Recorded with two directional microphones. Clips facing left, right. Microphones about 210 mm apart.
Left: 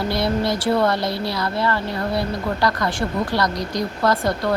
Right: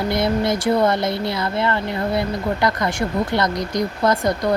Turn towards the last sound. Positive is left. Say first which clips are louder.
# right 1 dB
turn(degrees=-20)  # may be behind; listen again after turning